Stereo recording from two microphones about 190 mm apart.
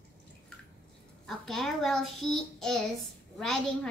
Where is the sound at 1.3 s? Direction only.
Centre (ahead or behind).